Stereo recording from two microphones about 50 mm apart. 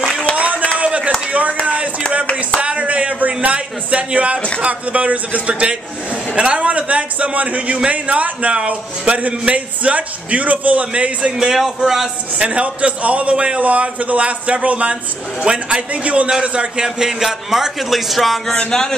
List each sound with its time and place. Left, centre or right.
0.7 s chop: right
1.3 s a sound: right
2.6 s a sound: right
4.6 s speech: right
11.3 s a man's voice: centre
12.4 s a man's voice: right; by 18.4 s centre
18.7 s a man's voice: centre